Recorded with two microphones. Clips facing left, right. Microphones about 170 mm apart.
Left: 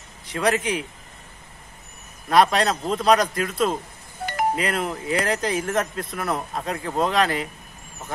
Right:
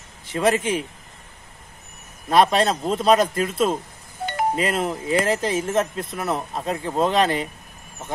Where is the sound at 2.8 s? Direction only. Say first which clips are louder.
Right 2 dB; centre (ahead or behind).